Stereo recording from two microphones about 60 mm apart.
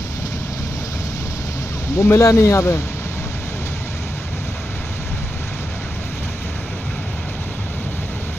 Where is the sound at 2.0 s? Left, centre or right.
Left.